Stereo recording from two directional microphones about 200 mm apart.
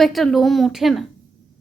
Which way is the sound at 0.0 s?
Centre (ahead or behind).